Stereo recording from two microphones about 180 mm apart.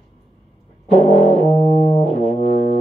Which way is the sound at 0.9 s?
35° left (ahead or behind).